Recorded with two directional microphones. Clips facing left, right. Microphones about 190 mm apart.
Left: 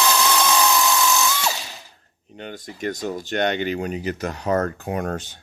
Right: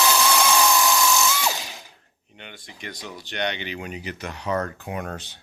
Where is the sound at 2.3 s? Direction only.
40° left (ahead or behind).